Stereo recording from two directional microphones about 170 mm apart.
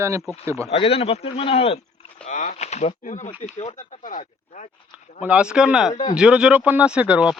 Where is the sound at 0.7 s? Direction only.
35° left (ahead or behind).